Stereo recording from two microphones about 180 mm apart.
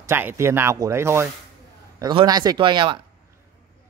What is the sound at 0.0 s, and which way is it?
A man's voice, 10° right (ahead or behind).